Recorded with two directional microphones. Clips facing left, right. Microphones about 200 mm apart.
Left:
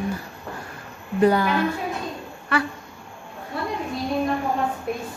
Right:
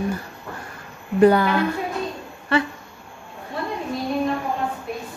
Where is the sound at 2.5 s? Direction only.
25° right (ahead or behind).